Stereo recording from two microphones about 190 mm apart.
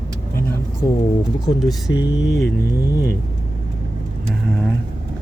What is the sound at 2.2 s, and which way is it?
Speech, 65° left (ahead or behind).